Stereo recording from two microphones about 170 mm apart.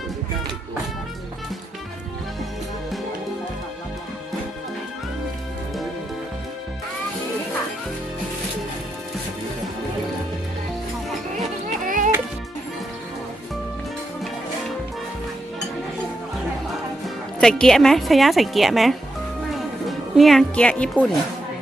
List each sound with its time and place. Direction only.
11.9 s music: 50° right (ahead or behind)
17.4 s a woman's voice: 5° left (ahead or behind)